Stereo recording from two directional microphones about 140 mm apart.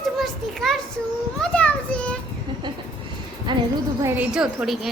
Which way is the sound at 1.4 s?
10° left (ahead or behind).